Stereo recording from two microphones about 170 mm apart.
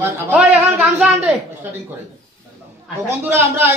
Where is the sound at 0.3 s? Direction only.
10° right (ahead or behind).